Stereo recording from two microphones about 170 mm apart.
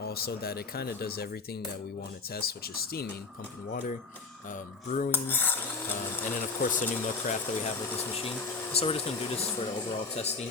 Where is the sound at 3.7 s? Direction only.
50° left (ahead or behind).